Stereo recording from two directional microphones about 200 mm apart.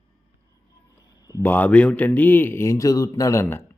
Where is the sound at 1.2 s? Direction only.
15° left (ahead or behind).